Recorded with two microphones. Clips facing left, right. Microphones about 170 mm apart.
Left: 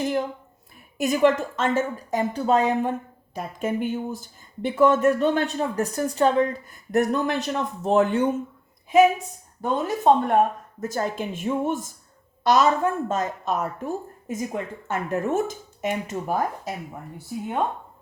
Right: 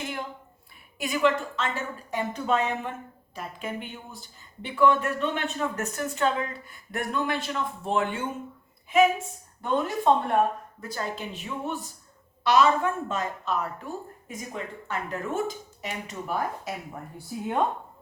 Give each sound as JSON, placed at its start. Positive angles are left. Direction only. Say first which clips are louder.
{"t": 0.0, "sound": "a sound", "louder": "left 10 dB", "side_deg": 40}
{"t": 0.9, "sound": "a woman's voice", "louder": "left 5 dB", "side_deg": 45}
{"t": 9.6, "sound": "a woman's voice", "louder": "left 2 dB", "side_deg": 45}